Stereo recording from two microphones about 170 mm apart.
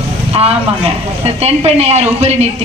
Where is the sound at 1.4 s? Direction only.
40° right (ahead or behind).